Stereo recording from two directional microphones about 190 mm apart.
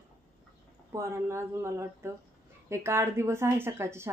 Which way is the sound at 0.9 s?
15° right (ahead or behind).